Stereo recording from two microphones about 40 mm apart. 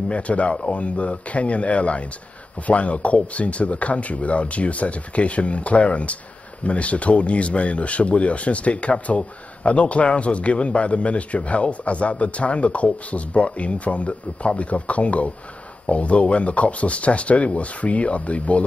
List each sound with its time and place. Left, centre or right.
0.1 s speech: left